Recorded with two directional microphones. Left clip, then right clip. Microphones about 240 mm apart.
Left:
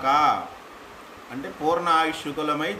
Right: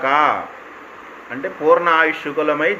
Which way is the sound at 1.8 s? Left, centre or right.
Left.